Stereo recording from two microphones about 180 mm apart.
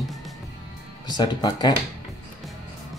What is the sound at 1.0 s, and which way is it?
Speech, 25° left (ahead or behind).